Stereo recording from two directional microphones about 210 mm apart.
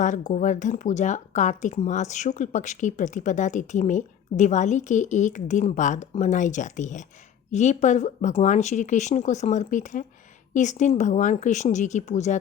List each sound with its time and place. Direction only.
0.0 s speech: 35° left (ahead or behind)